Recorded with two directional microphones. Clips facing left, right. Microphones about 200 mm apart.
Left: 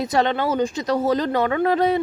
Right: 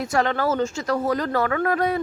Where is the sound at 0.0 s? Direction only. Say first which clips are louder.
Left 2 dB; 20° left (ahead or behind).